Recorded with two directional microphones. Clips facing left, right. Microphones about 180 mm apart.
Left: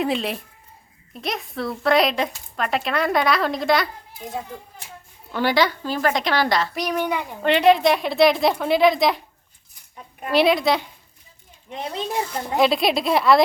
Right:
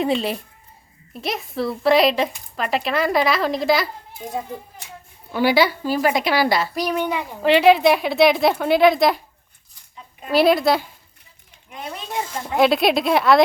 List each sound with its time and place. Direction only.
0.0 s a woman's voice: centre (ahead or behind)
5.3 s a woman's voice: 10° right (ahead or behind)
10.3 s a woman's voice: centre (ahead or behind)
11.7 s speech: 30° left (ahead or behind)
12.5 s a woman's voice: centre (ahead or behind)